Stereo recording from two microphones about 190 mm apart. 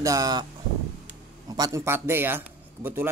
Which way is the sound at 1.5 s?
20° right (ahead or behind).